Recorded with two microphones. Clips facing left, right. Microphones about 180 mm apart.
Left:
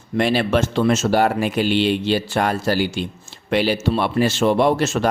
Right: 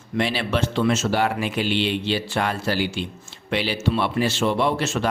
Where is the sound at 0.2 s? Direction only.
45° left (ahead or behind).